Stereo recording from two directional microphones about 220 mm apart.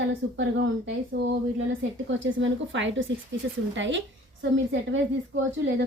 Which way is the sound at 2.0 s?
60° right (ahead or behind).